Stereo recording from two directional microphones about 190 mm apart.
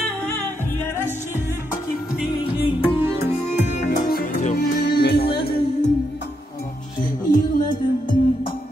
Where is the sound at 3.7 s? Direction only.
40° left (ahead or behind).